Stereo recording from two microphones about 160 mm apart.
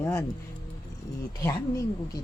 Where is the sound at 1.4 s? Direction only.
20° left (ahead or behind).